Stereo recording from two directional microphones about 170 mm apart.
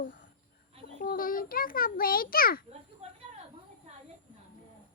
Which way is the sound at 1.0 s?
55° left (ahead or behind).